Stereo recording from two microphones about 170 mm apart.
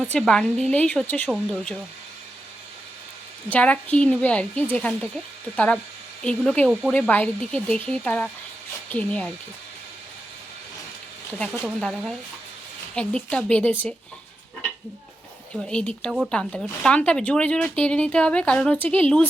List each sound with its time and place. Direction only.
0.0 s speech: 5° left (ahead or behind)
3.5 s speech: 10° left (ahead or behind)
11.6 s speech: centre (ahead or behind)
15.6 s speech: 5° left (ahead or behind)